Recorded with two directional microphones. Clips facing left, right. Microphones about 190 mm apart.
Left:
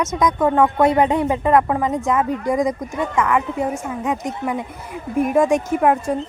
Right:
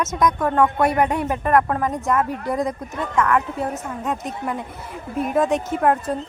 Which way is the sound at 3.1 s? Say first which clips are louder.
Even; 5° left (ahead or behind).